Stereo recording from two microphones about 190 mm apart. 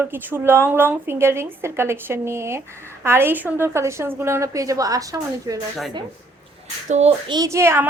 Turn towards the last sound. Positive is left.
turn(degrees=-15)  # may be behind; listen again after turning